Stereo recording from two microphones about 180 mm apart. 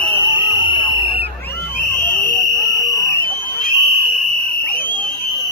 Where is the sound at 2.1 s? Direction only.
50° left (ahead or behind).